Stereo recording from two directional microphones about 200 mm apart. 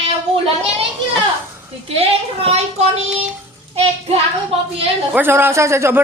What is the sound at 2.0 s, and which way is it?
Speech, 30° right (ahead or behind).